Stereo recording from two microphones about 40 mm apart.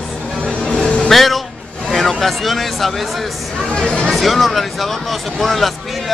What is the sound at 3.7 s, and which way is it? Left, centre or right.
Speech, left.